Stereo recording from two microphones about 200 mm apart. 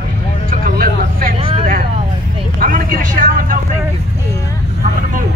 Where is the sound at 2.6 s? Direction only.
45° right (ahead or behind).